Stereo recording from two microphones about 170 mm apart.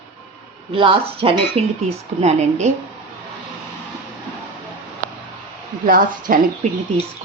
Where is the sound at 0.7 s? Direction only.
30° right (ahead or behind).